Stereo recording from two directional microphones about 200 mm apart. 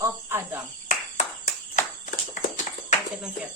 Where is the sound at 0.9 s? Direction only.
35° left (ahead or behind).